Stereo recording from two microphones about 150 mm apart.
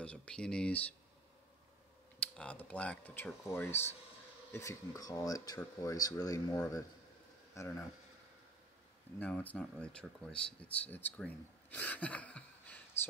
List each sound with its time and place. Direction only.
0.0 s speech: 10° left (ahead or behind)
2.1 s speech: 10° left (ahead or behind)
9.2 s speech: 10° left (ahead or behind)